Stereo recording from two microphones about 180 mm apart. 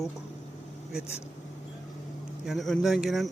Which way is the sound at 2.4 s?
Centre (ahead or behind).